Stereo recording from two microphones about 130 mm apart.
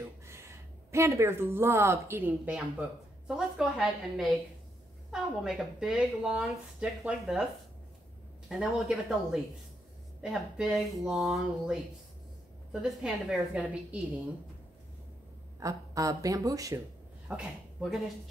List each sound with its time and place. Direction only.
0.9 s speech: 20° right (ahead or behind); by 7.4 s 5° right (ahead or behind)
8.5 s speech: 5° right (ahead or behind)
12.8 s speech: 5° right (ahead or behind)
15.6 s speech: 25° right (ahead or behind)
17.3 s speech: 10° right (ahead or behind)